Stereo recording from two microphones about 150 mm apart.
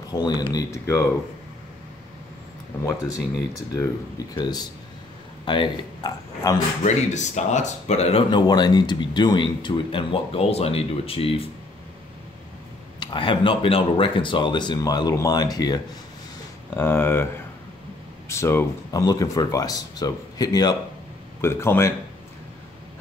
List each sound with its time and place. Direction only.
0.2 s speech: 30° left (ahead or behind)
2.8 s a man's voice: 20° left (ahead or behind)
6.8 s speech: 50° left (ahead or behind)
13.0 s speech: 35° left (ahead or behind)
16.7 s speech: 15° left (ahead or behind)
18.3 s speech: 15° left (ahead or behind)